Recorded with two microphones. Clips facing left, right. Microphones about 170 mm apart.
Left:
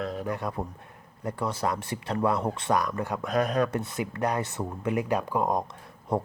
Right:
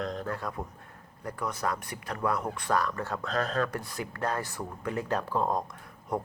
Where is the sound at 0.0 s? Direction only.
5° left (ahead or behind).